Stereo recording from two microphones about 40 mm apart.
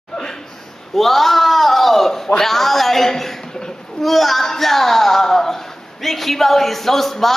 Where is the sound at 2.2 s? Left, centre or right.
Centre.